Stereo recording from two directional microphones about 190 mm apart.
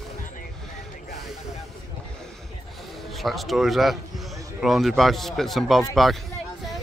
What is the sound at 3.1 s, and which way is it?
A man's voice, centre (ahead or behind).